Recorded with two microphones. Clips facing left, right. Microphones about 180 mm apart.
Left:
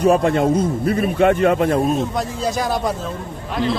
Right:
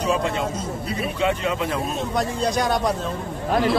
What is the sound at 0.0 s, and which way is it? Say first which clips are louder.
A man's voice: left 8 dB; 55° left (ahead or behind).